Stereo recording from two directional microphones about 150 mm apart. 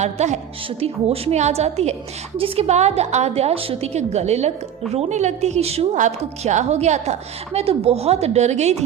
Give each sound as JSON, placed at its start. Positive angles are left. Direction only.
{"t": 0.0, "sound": "a woman's voice", "side_deg": -50}